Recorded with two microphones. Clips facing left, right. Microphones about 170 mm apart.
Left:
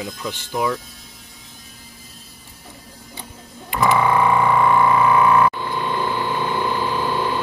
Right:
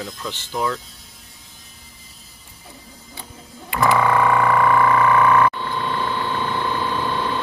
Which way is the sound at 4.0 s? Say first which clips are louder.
Even; 5° left (ahead or behind).